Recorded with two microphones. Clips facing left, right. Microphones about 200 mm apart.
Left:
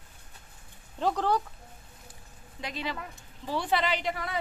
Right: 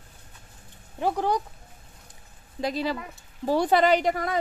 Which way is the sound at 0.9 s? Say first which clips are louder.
Right 2 dB; 10° right (ahead or behind).